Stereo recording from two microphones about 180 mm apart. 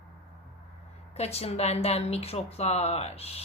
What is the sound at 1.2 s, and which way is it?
A woman's voice, 35° left (ahead or behind).